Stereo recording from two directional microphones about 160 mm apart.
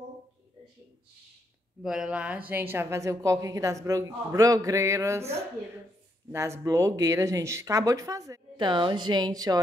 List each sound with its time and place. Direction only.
1.8 s speech: 5° right (ahead or behind)
6.3 s speech: 20° right (ahead or behind)